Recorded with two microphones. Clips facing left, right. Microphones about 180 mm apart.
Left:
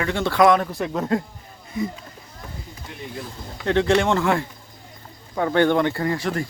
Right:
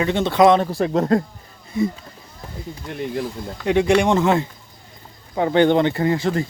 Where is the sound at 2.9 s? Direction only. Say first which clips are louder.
Right 10 dB; 60° right (ahead or behind).